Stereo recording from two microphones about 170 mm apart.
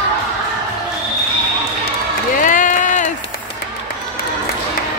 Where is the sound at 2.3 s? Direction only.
50° left (ahead or behind).